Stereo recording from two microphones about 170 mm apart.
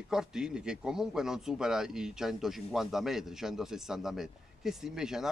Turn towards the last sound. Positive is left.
turn(degrees=-5)  # may be behind; listen again after turning